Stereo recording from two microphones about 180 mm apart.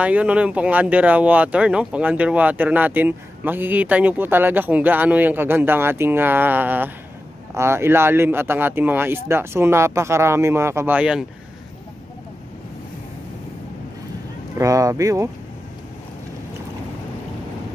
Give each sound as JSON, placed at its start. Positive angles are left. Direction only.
{"t": 0.0, "sound": "speech", "side_deg": -5}
{"t": 14.6, "sound": "speech", "side_deg": -20}